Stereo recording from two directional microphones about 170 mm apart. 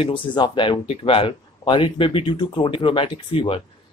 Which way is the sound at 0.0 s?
30° left (ahead or behind).